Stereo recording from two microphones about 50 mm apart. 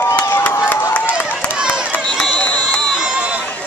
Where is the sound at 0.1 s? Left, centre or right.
Left.